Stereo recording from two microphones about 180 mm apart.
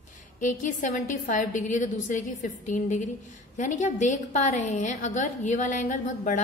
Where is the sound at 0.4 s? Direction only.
45° left (ahead or behind).